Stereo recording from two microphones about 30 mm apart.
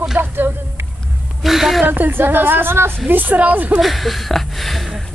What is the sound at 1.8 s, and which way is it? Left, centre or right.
Speech, right.